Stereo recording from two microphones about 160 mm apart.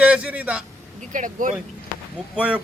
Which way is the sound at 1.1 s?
55° right (ahead or behind).